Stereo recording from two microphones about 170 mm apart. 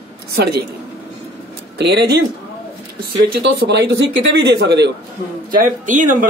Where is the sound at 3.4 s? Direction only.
85° right.